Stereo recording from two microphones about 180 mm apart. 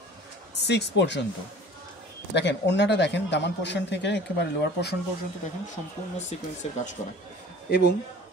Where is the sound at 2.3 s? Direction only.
75° left (ahead or behind).